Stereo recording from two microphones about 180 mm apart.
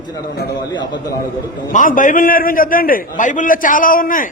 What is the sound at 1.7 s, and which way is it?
A man's voice, 45° left (ahead or behind).